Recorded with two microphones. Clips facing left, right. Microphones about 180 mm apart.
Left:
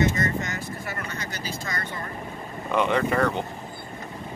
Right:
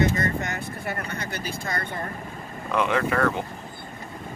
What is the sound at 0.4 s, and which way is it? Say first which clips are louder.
Vehicle: right 1 dB; 60° right (ahead or behind).